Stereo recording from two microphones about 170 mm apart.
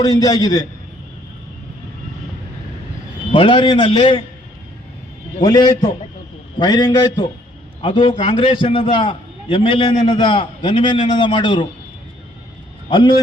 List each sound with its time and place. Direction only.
0.0 s a man's voice: 20° left (ahead or behind)
3.3 s a man's voice: 30° left (ahead or behind)
5.4 s a man's voice: 25° left (ahead or behind)
12.9 s a man's voice: 25° left (ahead or behind)